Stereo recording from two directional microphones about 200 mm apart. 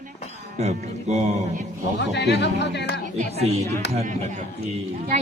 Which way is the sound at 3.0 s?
40° right (ahead or behind).